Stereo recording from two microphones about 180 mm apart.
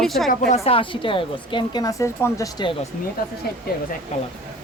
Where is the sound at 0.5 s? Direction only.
35° left (ahead or behind).